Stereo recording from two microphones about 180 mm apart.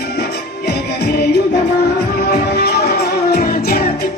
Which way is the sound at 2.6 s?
65° left (ahead or behind).